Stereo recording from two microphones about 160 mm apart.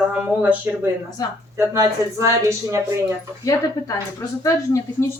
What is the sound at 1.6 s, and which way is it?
Speech, 20° right (ahead or behind).